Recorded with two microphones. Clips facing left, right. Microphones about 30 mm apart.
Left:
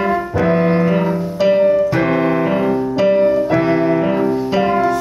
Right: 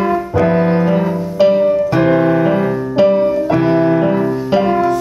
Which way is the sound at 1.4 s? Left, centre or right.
Centre.